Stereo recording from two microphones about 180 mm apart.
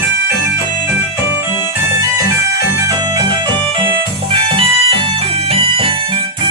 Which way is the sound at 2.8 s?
20° right (ahead or behind).